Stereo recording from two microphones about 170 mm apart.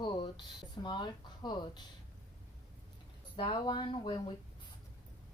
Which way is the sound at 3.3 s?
30° left (ahead or behind).